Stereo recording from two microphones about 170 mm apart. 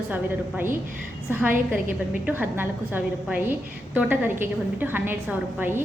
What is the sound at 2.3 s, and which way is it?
A woman's voice, 10° right (ahead or behind).